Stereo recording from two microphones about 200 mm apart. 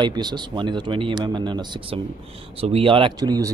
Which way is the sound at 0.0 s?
20° right (ahead or behind).